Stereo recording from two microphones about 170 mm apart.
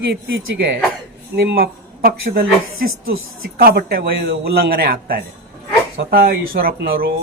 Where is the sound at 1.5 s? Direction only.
65° right (ahead or behind).